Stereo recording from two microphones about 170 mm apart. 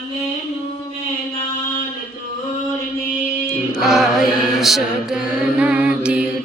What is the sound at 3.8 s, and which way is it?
Mantra, 5° right (ahead or behind).